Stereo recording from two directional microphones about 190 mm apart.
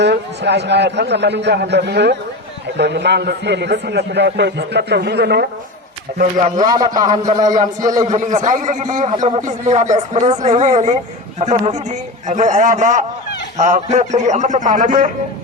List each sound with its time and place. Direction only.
0.0 s a man's voice: 65° right (ahead or behind)
6.6 s a man's voice: 20° right (ahead or behind)
8.0 s a man's voice: 40° right (ahead or behind)